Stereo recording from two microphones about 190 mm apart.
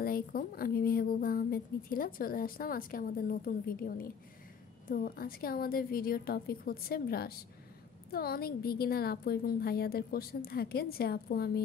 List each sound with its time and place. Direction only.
0.0 s a woman's voice: 50° left (ahead or behind)